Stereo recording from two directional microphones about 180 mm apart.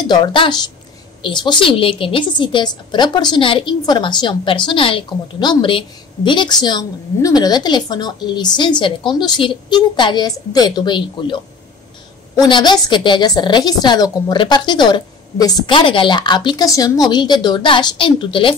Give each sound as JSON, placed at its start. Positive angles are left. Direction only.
{"t": 0.0, "sound": "a woman's voice", "side_deg": 25}